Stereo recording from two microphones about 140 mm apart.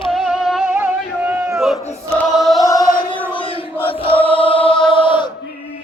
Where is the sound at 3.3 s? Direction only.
40° left (ahead or behind).